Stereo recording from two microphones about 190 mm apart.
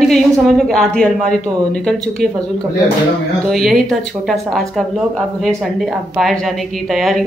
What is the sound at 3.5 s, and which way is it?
Speech, centre (ahead or behind).